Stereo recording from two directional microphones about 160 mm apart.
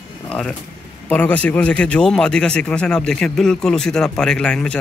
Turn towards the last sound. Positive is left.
turn(degrees=5)  # may be behind; listen again after turning